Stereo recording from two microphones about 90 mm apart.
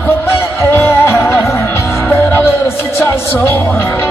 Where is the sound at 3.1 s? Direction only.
30° left (ahead or behind).